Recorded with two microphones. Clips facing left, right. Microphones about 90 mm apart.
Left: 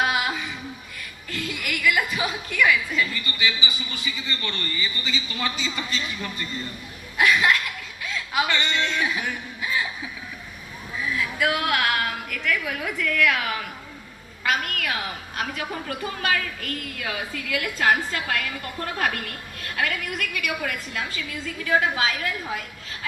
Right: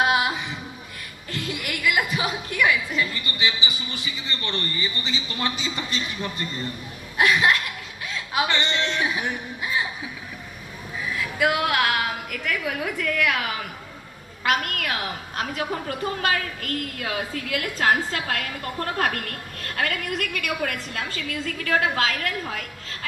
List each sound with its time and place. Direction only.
0.0 s music: 25° right (ahead or behind)
1.3 s a woman's voice: 25° right (ahead or behind)
8.0 s a sound: 30° right (ahead or behind)
11.8 s a woman's voice: 35° right (ahead or behind); by 22.6 s 60° right (ahead or behind)